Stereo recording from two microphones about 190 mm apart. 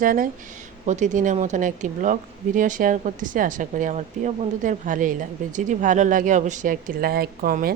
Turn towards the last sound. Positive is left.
turn(degrees=-50)  # may be behind; listen again after turning